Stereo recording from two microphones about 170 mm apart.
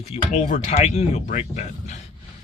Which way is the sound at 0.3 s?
45° left (ahead or behind).